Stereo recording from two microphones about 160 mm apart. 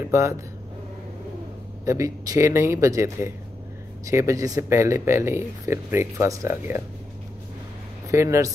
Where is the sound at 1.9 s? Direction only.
20° right (ahead or behind).